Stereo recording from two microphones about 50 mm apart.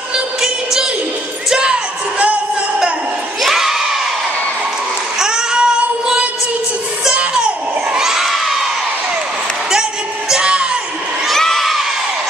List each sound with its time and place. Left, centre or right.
1.5 s music: centre
3.4 s crowd: centre
5.2 s child singing: centre
7.2 s children shouting: centre
10.3 s music: centre
11.2 s a sound: centre